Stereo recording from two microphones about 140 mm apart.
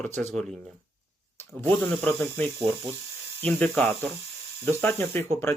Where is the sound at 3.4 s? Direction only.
10° left (ahead or behind).